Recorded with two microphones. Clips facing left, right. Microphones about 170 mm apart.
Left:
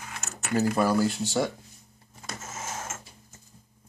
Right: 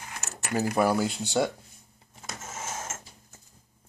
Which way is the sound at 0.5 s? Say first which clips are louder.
Left 1 dB; 15° right (ahead or behind).